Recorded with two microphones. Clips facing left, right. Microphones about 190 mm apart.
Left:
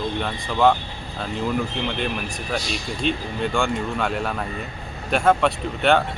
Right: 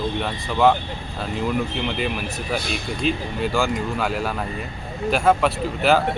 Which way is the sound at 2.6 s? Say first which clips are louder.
Left 2 dB; 55° right (ahead or behind).